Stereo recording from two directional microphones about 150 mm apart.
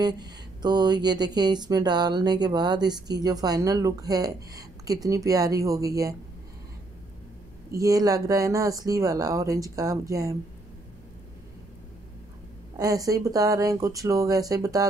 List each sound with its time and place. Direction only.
0.0 s speech: 25° right (ahead or behind)
7.7 s speech: 25° right (ahead or behind)
12.7 s speech: 25° right (ahead or behind)